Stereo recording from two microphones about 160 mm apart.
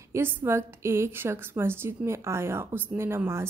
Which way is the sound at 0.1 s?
15° right (ahead or behind).